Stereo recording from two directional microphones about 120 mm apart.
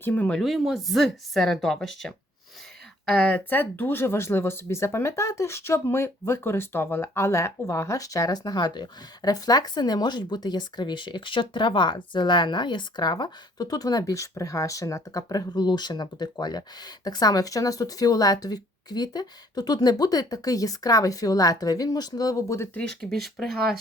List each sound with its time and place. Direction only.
0.0 s speech: 15° left (ahead or behind)
0.3 s speech: centre (ahead or behind); by 22.8 s 20° left (ahead or behind)
22.8 s speech: 5° left (ahead or behind)